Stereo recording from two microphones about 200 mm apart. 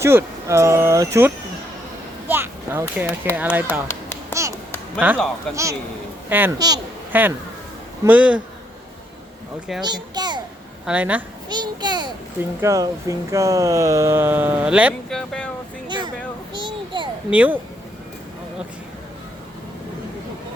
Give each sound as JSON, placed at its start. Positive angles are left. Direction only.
{"t": 0.0, "sound": "speech", "side_deg": -10}
{"t": 2.2, "sound": "a sound", "side_deg": -10}
{"t": 3.3, "sound": "speech", "side_deg": -10}
{"t": 5.1, "sound": "speech", "side_deg": 0}
{"t": 6.2, "sound": "speech", "side_deg": -10}
{"t": 9.8, "sound": "children playing", "side_deg": -20}
{"t": 10.8, "sound": "speech", "side_deg": -5}
{"t": 11.4, "sound": "a child's voice", "side_deg": -20}
{"t": 15.9, "sound": "a sound", "side_deg": -20}
{"t": 17.3, "sound": "speech", "side_deg": -5}